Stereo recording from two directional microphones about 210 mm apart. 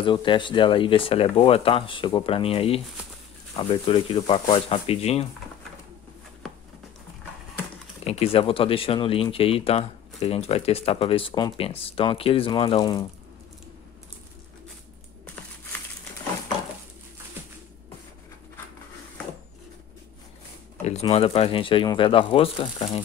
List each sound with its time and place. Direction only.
0.0 s speech: 25° left (ahead or behind)
8.0 s speech: 30° left (ahead or behind)
20.8 s speech: 30° left (ahead or behind)